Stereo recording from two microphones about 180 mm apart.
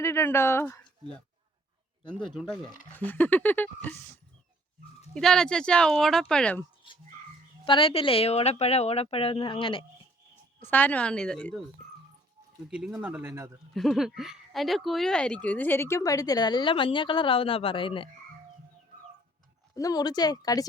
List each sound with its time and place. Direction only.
0.0 s speech: 15° left (ahead or behind)
2.1 s speech: 5° left (ahead or behind)
5.1 s speech: 5° left (ahead or behind)
7.6 s speech: 30° left (ahead or behind)
10.6 s speech: 10° left (ahead or behind)
12.9 s speech: 10° right (ahead or behind)
13.7 s a woman's voice: centre (ahead or behind); by 18.1 s 30° left (ahead or behind)
19.7 s a woman's voice: 20° left (ahead or behind)